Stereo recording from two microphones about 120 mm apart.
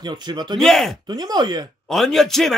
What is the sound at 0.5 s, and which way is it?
Speech, centre (ahead or behind).